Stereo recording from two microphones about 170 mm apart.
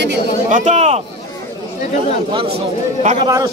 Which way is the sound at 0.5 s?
45° right (ahead or behind).